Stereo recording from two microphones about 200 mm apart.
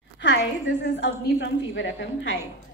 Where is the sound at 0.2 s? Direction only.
65° left (ahead or behind).